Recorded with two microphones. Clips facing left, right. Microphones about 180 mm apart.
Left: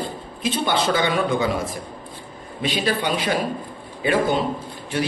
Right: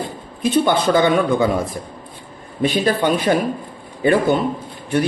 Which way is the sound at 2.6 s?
45° right (ahead or behind).